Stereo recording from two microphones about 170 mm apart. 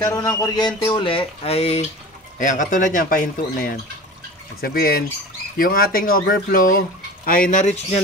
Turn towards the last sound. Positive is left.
turn(degrees=40)  # may be behind; listen again after turning